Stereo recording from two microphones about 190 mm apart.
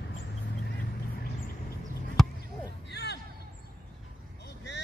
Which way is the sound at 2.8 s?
60° left (ahead or behind).